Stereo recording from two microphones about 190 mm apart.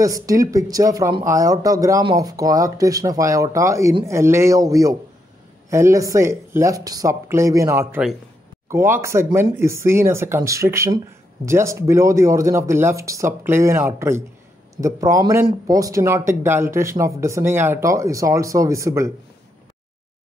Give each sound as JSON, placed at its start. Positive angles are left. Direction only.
{"t": 0.0, "sound": "speech", "side_deg": -15}